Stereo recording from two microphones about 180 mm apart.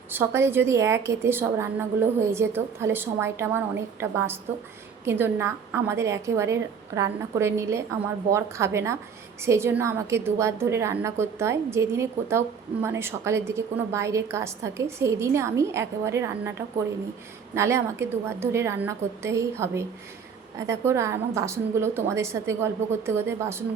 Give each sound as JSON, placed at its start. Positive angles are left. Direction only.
{"t": 0.1, "sound": "a woman's voice", "side_deg": -15}